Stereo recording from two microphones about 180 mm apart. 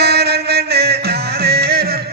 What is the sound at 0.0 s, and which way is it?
Music, 60° right (ahead or behind).